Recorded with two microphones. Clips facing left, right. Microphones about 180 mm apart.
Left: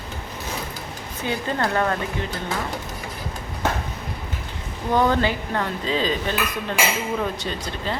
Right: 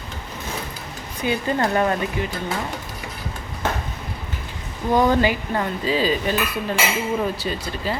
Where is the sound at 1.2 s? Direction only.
15° right (ahead or behind).